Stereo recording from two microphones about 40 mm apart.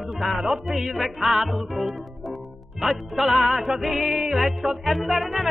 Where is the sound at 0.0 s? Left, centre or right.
Centre.